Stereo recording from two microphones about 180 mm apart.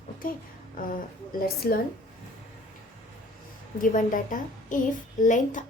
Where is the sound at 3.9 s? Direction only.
45° left (ahead or behind).